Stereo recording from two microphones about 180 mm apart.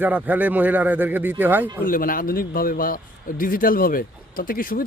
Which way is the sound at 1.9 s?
50° left (ahead or behind).